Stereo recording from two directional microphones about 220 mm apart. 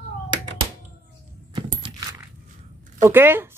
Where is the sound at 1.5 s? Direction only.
20° right (ahead or behind).